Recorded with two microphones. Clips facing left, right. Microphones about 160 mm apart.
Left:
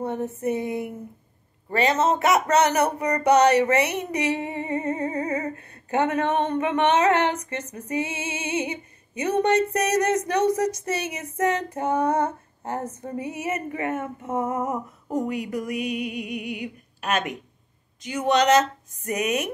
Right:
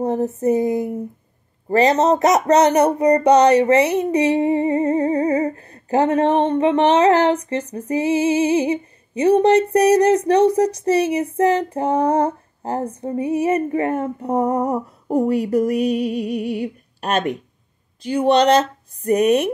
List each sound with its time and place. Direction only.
0.0 s a sound: 35° right (ahead or behind)
0.4 s female singing: 35° right (ahead or behind)
16.5 s speech: 40° right (ahead or behind)